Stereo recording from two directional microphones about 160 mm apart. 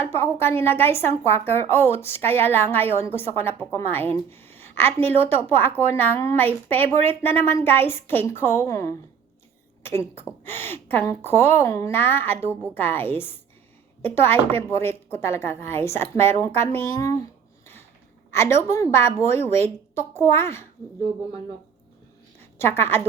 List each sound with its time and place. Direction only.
0.0 s speech: 15° left (ahead or behind)
18.3 s speech: 15° left (ahead or behind)
22.4 s a sound: 15° left (ahead or behind)